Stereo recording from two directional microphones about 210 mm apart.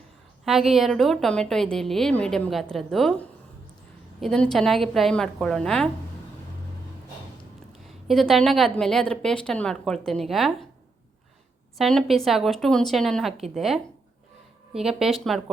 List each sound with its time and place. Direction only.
0.4 s a woman's voice: centre (ahead or behind)
7.9 s a woman's voice: centre (ahead or behind)
11.8 s a woman's voice: centre (ahead or behind)